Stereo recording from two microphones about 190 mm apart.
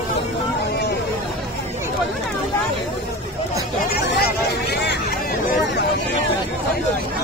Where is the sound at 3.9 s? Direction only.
60° left (ahead or behind).